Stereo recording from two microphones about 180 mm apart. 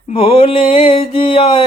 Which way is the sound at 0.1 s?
35° left (ahead or behind).